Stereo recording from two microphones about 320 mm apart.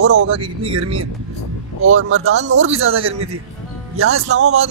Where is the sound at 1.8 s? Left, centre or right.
Right.